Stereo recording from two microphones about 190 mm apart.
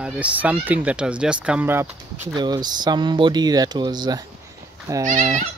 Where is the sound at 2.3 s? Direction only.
20° right (ahead or behind).